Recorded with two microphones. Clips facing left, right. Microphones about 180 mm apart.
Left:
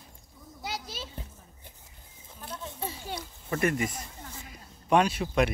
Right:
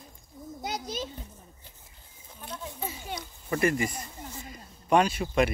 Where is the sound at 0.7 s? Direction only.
40° right (ahead or behind).